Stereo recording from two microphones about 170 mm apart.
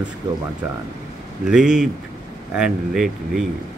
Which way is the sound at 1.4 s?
5° right (ahead or behind).